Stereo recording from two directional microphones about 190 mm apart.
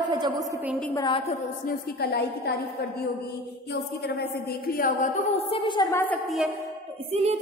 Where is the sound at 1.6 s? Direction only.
55° left (ahead or behind).